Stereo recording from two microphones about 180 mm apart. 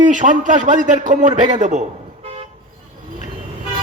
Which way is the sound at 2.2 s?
35° right (ahead or behind).